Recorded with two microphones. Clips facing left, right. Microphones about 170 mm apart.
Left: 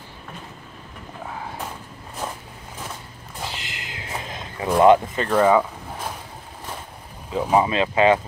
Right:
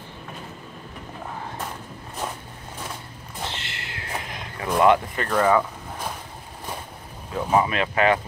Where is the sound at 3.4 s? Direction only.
15° left (ahead or behind).